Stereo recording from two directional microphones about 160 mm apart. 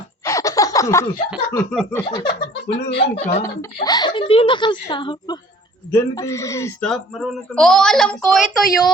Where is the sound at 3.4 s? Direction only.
25° left (ahead or behind).